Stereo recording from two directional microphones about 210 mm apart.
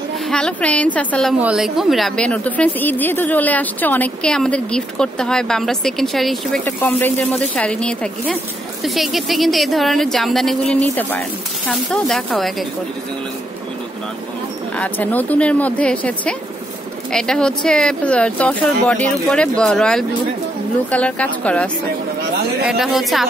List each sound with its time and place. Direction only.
0.3 s a woman's voice: 5° left (ahead or behind)
14.8 s a woman's voice: 10° left (ahead or behind)
22.7 s a woman's voice: centre (ahead or behind)